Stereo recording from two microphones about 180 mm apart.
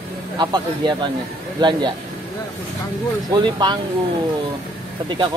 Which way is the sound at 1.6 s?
25° right (ahead or behind).